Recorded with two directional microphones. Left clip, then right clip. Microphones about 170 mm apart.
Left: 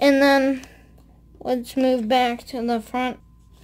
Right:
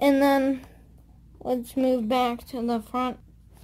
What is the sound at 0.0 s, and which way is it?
A woman's voice, 5° left (ahead or behind).